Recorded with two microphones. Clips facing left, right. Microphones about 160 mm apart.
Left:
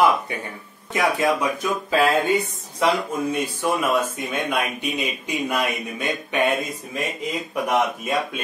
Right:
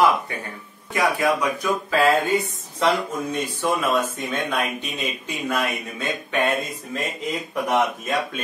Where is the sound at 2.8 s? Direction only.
10° left (ahead or behind).